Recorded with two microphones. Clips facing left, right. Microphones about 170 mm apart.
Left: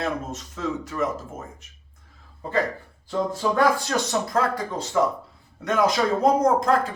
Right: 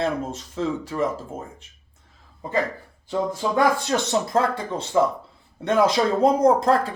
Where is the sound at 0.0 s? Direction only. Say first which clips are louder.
Right 3 dB; 30° right (ahead or behind).